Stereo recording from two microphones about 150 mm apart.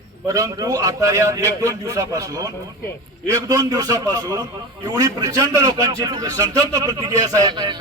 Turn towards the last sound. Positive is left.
turn(degrees=-30)  # may be behind; listen again after turning